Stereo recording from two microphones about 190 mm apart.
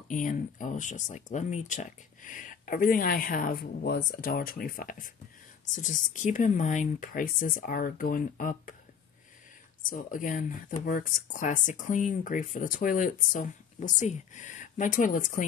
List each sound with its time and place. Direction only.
0.1 s speech: 45° left (ahead or behind)
9.8 s speech: 45° left (ahead or behind)